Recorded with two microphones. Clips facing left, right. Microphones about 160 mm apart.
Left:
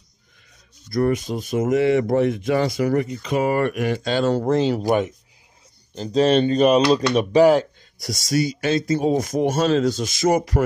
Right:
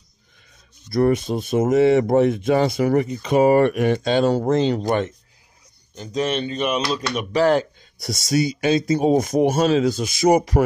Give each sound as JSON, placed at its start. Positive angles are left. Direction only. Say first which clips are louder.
{"t": 0.8, "sound": "speech", "louder": "right 2 dB", "side_deg": -30}
{"t": 4.4, "sound": "speech", "louder": "even", "side_deg": 0}
{"t": 5.9, "sound": "speech", "louder": "left 6 dB", "side_deg": 30}
{"t": 8.3, "sound": "speech", "louder": "right 2 dB", "side_deg": -20}